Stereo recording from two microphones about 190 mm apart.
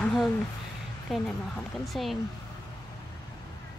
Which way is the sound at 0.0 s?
5° left (ahead or behind).